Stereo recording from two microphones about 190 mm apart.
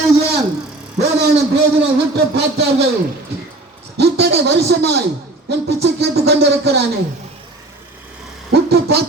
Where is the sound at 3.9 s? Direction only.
60° right (ahead or behind).